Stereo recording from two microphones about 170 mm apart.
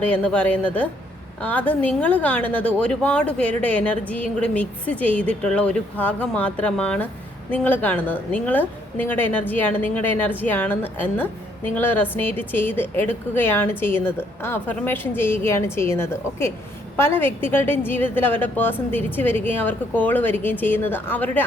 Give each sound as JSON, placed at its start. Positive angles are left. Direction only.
{"t": 0.0, "sound": "a woman's voice", "side_deg": 5}